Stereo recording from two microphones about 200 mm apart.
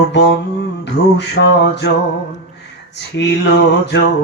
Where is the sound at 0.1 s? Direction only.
60° left (ahead or behind).